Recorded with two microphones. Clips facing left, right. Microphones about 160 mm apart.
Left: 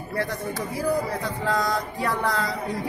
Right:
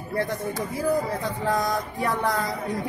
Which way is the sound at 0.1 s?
20° right (ahead or behind).